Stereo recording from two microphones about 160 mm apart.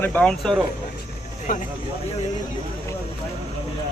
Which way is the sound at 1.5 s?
60° left (ahead or behind).